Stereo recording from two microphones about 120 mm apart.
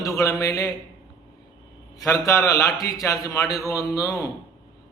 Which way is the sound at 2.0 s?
25° left (ahead or behind).